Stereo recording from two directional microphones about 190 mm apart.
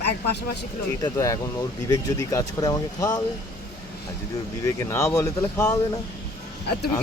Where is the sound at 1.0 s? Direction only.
20° left (ahead or behind).